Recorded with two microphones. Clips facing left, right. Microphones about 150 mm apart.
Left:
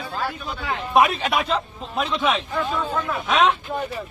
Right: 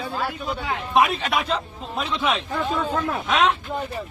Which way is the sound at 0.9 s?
Centre (ahead or behind).